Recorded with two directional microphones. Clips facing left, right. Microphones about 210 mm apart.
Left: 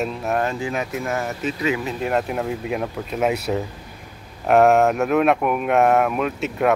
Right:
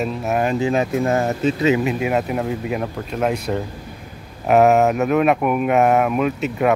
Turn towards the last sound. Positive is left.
turn(degrees=0)  # may be behind; listen again after turning